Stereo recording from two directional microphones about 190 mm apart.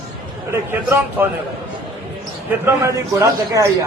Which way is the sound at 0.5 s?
10° right (ahead or behind).